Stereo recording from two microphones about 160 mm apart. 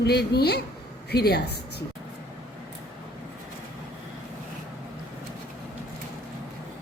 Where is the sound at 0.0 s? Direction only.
90° left.